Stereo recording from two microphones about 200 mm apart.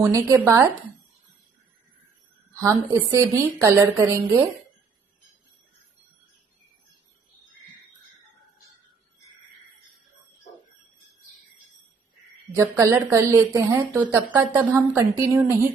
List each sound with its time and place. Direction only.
0.0 s a woman's voice: 15° right (ahead or behind)
2.5 s a woman's voice: 15° right (ahead or behind)
12.5 s a woman's voice: 15° right (ahead or behind)